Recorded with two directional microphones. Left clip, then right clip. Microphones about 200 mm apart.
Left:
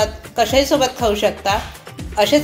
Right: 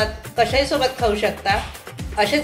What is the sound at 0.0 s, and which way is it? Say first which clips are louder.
A woman's voice: left 2 dB; 30° left (ahead or behind).